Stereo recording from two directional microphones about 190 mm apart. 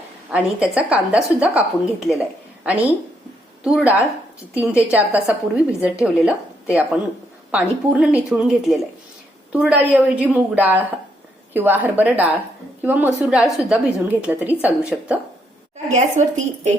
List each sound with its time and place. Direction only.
0.3 s a woman's voice: 5° right (ahead or behind)
7.5 s a woman's voice: 5° right (ahead or behind)
15.9 s speech: 40° right (ahead or behind)